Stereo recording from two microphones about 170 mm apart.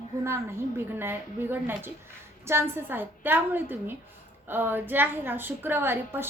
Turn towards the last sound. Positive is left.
turn(degrees=-15)  # may be behind; listen again after turning